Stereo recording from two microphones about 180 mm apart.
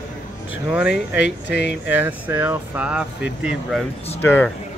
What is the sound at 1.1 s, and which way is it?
Speech, 75° left (ahead or behind).